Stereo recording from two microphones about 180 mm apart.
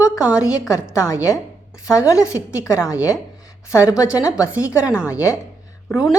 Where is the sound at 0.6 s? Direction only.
15° left (ahead or behind).